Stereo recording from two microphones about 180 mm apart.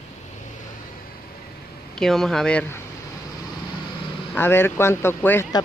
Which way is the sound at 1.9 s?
Centre (ahead or behind).